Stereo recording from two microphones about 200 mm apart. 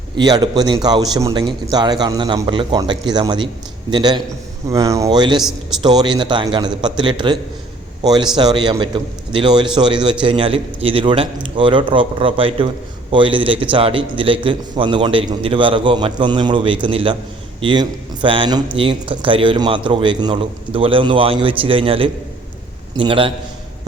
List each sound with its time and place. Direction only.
0.2 s a man's voice: 20° right (ahead or behind)